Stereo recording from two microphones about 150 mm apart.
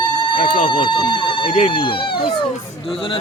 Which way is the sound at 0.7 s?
30° left (ahead or behind).